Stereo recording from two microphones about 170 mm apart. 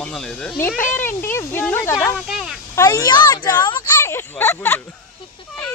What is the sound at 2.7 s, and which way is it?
Speech, 20° left (ahead or behind).